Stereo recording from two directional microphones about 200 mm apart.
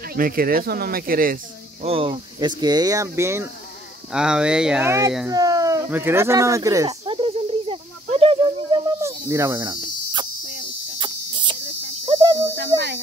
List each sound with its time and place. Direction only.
0.1 s speech: 50° right (ahead or behind)
1.9 s speech: 25° right (ahead or behind)
4.1 s speech: 5° right (ahead or behind)
5.3 s a sound: 20° right (ahead or behind)
9.3 s cricket: 15° right (ahead or behind)
12.1 s insect: 20° right (ahead or behind)
12.5 s a sound: 60° right (ahead or behind)